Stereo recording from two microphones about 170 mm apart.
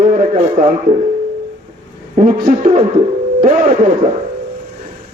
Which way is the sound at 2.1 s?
45° right (ahead or behind).